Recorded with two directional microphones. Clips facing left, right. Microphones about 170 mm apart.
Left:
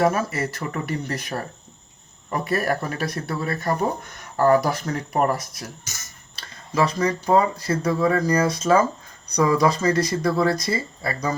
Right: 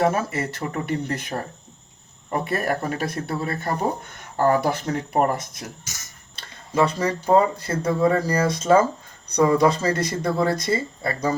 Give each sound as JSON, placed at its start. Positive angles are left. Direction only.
{"t": 0.0, "sound": "speech", "side_deg": -25}
{"t": 2.3, "sound": "speech", "side_deg": -20}
{"t": 6.7, "sound": "speech", "side_deg": -30}